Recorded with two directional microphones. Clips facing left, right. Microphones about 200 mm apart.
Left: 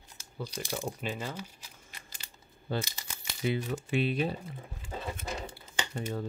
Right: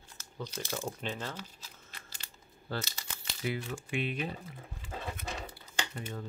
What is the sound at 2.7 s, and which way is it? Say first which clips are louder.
Speech: left 4 dB; 20° left (ahead or behind).